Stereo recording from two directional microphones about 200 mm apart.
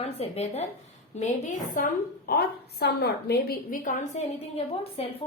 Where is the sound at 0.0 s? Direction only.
30° left (ahead or behind).